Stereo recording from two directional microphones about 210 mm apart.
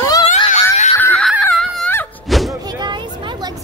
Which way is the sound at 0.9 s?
10° left (ahead or behind).